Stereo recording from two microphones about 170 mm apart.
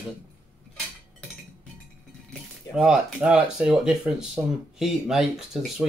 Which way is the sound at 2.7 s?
5° right (ahead or behind).